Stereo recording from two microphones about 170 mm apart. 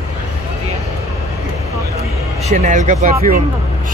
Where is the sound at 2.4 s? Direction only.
45° right (ahead or behind).